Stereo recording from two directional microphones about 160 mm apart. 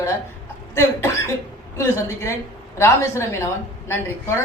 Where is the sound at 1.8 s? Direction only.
15° left (ahead or behind).